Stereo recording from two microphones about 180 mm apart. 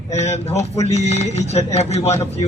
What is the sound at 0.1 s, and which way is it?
Speech, 35° left (ahead or behind).